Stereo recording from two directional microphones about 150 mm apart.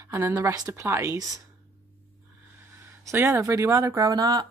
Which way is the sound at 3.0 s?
20° right (ahead or behind).